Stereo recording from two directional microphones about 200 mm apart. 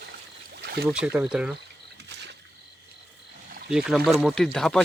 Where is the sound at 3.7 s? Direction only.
Centre (ahead or behind).